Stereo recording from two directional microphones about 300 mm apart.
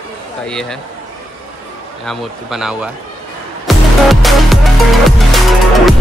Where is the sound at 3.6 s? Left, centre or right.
Centre.